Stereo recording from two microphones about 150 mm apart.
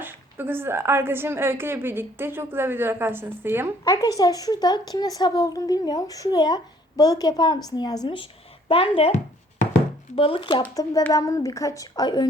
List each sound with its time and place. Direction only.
0.0 s a woman's voice: 15° right (ahead or behind)
3.8 s speech: 25° left (ahead or behind)